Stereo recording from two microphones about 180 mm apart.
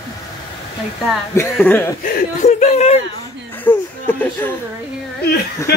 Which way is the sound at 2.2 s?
45° left (ahead or behind).